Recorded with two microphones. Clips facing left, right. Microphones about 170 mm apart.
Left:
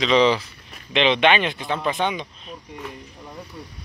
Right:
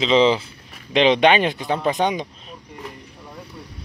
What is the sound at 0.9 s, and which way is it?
Speech, 40° right (ahead or behind).